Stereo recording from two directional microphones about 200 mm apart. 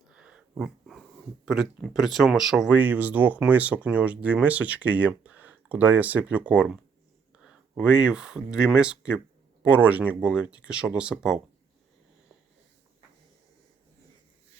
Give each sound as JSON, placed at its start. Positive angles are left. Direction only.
{"t": 0.1, "sound": "dog", "side_deg": -5}
{"t": 1.5, "sound": "speech", "side_deg": 0}